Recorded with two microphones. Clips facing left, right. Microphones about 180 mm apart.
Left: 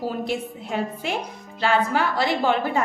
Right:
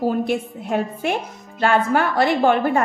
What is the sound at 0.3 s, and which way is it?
Speech, 50° right (ahead or behind).